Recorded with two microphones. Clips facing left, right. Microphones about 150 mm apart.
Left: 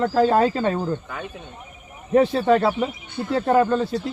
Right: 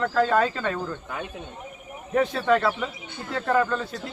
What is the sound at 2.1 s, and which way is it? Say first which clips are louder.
Speech: left 5 dB; 30° left (ahead or behind).